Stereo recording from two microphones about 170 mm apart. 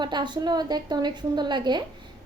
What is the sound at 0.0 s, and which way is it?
A woman's voice, 25° right (ahead or behind).